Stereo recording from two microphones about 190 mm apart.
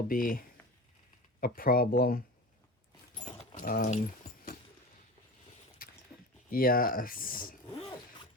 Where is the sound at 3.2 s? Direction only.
45° left (ahead or behind).